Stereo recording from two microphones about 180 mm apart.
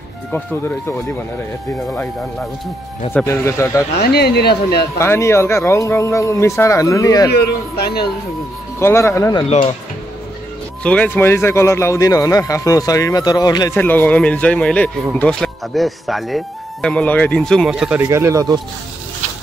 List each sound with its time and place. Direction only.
3.1 s a man's voice: 10° left (ahead or behind)
4.0 s speech: 60° left (ahead or behind)
4.9 s a man's voice: 15° left (ahead or behind)
7.2 s speech: 60° left (ahead or behind)
8.7 s a man's voice: 15° left (ahead or behind)
9.4 s speech: 30° left (ahead or behind)
10.8 s a man's voice: 5° left (ahead or behind)
13.7 s a man's voice: 10° left (ahead or behind)
18.0 s speech: 15° right (ahead or behind)